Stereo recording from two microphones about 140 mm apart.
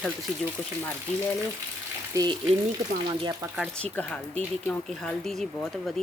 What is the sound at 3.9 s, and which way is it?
Speech, 10° left (ahead or behind).